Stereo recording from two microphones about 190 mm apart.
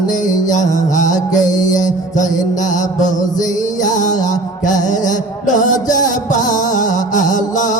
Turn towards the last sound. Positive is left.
turn(degrees=40)  # may be behind; listen again after turning